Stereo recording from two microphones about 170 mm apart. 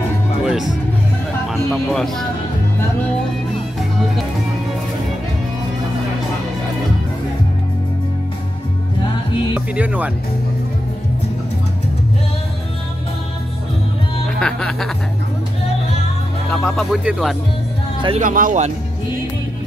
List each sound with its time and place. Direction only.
0.4 s music: 5° right (ahead or behind)
1.5 s speech: centre (ahead or behind)
9.8 s speech: 10° right (ahead or behind)
14.4 s speech: 5° left (ahead or behind)
16.4 s speech: 5° left (ahead or behind)
18.2 s speech: 50° right (ahead or behind)